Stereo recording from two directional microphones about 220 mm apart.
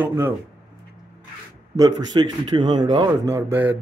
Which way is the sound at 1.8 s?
20° right (ahead or behind).